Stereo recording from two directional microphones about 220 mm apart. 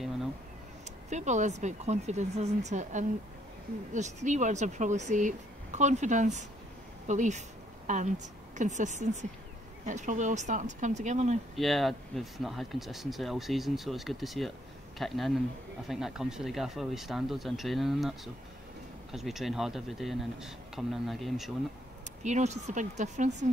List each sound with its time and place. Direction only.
1.1 s speech: 35° right (ahead or behind)
11.5 s speech: centre (ahead or behind)
22.2 s speech: 30° right (ahead or behind)